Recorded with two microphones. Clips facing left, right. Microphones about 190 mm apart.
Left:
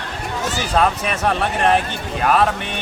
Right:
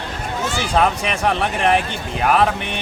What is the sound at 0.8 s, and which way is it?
Speech, 15° right (ahead or behind).